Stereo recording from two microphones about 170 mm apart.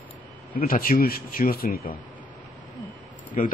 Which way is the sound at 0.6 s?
55° left (ahead or behind).